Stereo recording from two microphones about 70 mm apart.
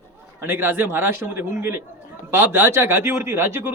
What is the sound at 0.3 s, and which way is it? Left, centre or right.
Speech, right.